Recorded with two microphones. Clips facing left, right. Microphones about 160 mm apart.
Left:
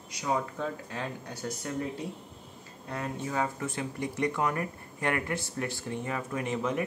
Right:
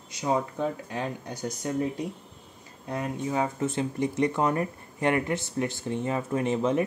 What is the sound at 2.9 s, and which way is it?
Speech, 20° right (ahead or behind).